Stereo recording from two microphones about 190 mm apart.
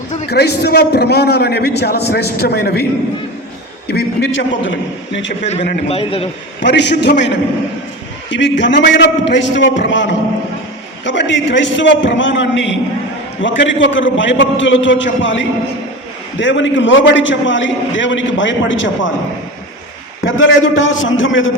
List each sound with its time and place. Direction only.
0.3 s a man's voice: 60° left (ahead or behind)
3.8 s a man's voice: 60° left (ahead or behind)
5.4 s a man's voice: 35° left (ahead or behind)
6.6 s a man's voice: 65° left (ahead or behind)
20.2 s a man's voice: 85° left